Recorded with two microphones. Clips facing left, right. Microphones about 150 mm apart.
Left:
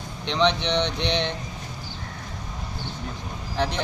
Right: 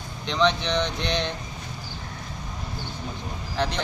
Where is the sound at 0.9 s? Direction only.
70° left (ahead or behind).